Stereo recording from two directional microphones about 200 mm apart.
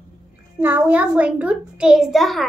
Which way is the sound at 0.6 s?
10° right (ahead or behind).